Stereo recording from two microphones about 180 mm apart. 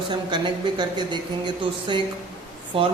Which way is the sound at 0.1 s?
25° right (ahead or behind).